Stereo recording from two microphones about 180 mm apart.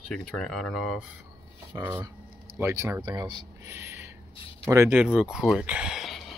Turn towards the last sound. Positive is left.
turn(degrees=0)  # may be behind; listen again after turning